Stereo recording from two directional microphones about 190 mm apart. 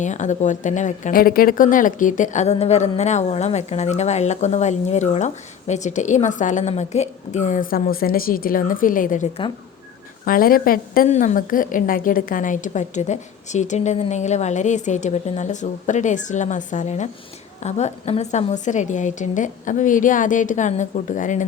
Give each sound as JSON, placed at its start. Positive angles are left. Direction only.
{"t": 0.0, "sound": "speech", "side_deg": 40}
{"t": 10.2, "sound": "speech", "side_deg": 50}